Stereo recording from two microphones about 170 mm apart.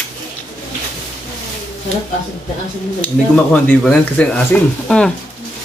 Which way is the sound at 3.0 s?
10° left (ahead or behind).